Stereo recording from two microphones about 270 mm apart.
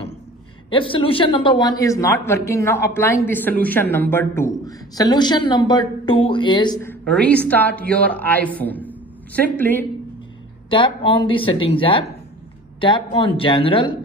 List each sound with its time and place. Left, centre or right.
0.7 s speech: centre
10.7 s speech: centre